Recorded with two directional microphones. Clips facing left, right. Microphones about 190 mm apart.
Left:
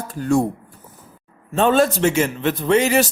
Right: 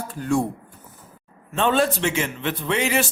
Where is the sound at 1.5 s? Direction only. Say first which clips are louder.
Left 4 dB; 40° left (ahead or behind).